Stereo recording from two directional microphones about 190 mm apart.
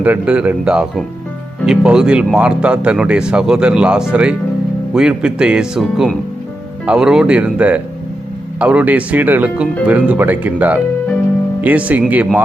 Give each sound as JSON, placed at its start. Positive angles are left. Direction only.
{"t": 0.0, "sound": "speech", "side_deg": -5}